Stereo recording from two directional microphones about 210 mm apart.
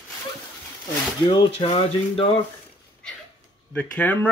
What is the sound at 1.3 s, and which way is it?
Speech, 25° left (ahead or behind).